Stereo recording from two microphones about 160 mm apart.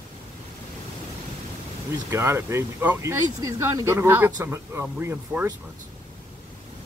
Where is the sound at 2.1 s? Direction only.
15° right (ahead or behind).